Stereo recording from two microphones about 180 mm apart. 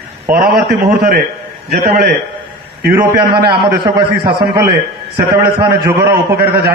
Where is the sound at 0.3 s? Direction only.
55° right (ahead or behind).